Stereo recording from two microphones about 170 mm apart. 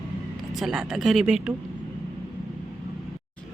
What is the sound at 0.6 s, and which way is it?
Speech, 5° right (ahead or behind).